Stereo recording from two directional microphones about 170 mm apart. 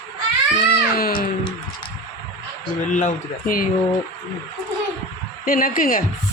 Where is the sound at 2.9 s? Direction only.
50° left (ahead or behind).